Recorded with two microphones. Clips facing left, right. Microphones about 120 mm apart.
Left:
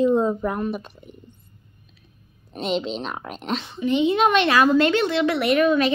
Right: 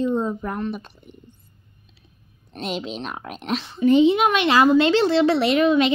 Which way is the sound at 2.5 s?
Centre (ahead or behind).